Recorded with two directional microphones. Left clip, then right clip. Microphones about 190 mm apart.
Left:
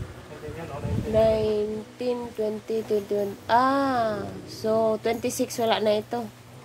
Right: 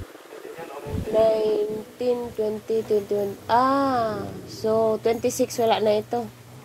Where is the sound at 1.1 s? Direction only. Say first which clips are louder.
Right 2 dB; 15° left (ahead or behind).